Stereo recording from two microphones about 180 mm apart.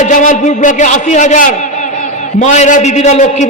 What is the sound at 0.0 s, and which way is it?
A man's voice, 45° left (ahead or behind).